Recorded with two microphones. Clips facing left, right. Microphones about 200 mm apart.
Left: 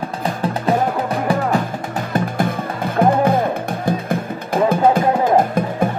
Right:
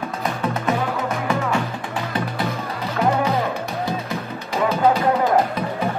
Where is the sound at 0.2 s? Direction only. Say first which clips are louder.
Left 3 dB; 30° left (ahead or behind).